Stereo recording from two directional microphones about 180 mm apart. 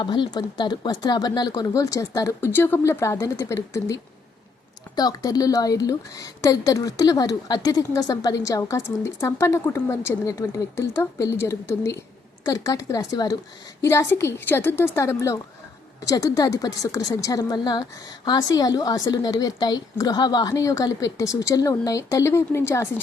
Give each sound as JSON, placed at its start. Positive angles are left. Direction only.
{"t": 0.0, "sound": "a woman's voice", "side_deg": 25}
{"t": 4.9, "sound": "a woman's voice", "side_deg": 20}